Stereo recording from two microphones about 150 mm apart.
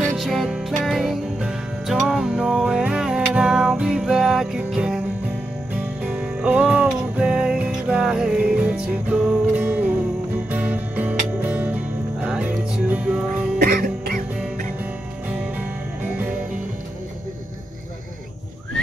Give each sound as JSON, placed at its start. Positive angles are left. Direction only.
{"t": 0.0, "sound": "music", "side_deg": 0}
{"t": 13.6, "sound": "music", "side_deg": -75}
{"t": 15.2, "sound": "music", "side_deg": -10}